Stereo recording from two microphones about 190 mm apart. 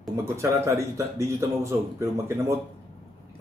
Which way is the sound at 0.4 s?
15° right (ahead or behind).